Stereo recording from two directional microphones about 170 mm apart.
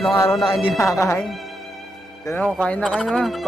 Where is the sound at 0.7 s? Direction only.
15° left (ahead or behind).